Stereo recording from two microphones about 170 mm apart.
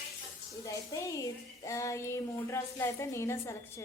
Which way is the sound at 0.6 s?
20° left (ahead or behind).